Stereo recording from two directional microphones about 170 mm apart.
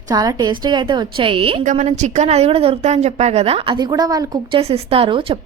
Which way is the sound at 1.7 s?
45° right (ahead or behind).